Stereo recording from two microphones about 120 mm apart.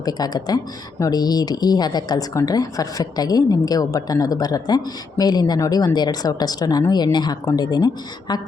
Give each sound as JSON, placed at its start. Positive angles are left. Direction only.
{"t": 0.0, "sound": "speech", "side_deg": 35}